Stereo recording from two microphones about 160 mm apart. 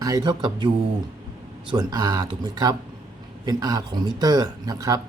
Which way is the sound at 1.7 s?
25° right (ahead or behind).